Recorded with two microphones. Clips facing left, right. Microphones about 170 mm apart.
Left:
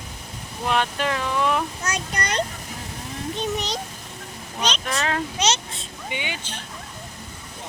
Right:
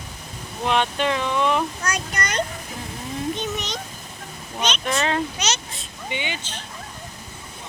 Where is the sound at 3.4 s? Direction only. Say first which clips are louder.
Left 2 dB; 35° left (ahead or behind).